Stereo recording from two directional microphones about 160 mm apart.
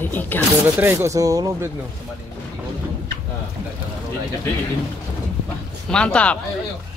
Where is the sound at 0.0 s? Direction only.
10° left (ahead or behind).